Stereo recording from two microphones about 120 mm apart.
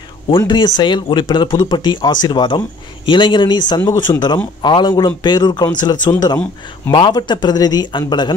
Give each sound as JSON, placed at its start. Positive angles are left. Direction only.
{"t": 0.4, "sound": "speech", "side_deg": 35}